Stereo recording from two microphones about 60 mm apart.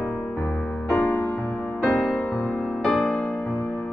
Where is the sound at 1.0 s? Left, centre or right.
Left.